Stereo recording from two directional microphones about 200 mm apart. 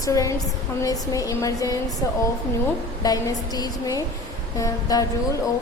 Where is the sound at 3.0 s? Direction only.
20° left (ahead or behind).